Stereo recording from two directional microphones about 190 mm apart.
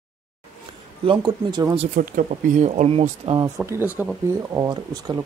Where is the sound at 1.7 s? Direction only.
40° right (ahead or behind).